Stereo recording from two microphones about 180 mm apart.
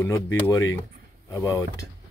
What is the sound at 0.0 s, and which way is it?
Speech, 15° left (ahead or behind).